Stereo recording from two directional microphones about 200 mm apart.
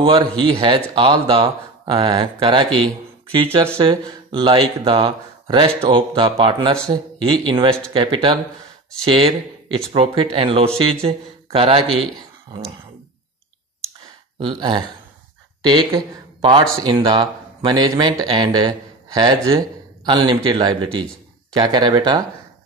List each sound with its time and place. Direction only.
0.0 s a man's voice: 25° right (ahead or behind)
14.4 s speech: 25° right (ahead or behind)